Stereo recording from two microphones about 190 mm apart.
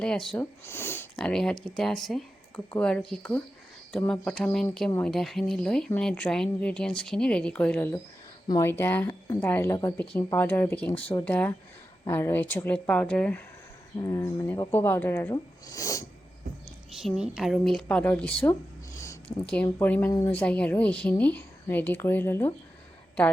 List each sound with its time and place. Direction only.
0.0 s a woman's voice: 5° left (ahead or behind)
4.9 s a woman's voice: 10° left (ahead or behind)
5.1 s a woman's voice: centre (ahead or behind); by 16.0 s 15° left (ahead or behind)
17.0 s speech: centre (ahead or behind)
19.3 s speech: 30° left (ahead or behind)
19.8 s a woman's voice: 10° left (ahead or behind)
20.1 s speech: 20° left (ahead or behind)
20.3 s a woman's voice: 5° left (ahead or behind)